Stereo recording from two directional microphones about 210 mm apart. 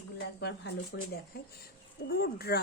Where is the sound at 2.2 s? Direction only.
50° left (ahead or behind).